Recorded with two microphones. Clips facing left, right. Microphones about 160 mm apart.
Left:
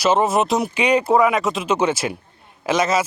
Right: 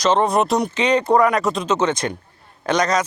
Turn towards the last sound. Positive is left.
turn(degrees=5)  # may be behind; listen again after turning